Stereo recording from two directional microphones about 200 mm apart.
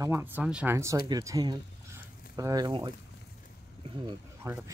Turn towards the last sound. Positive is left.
turn(degrees=-15)  # may be behind; listen again after turning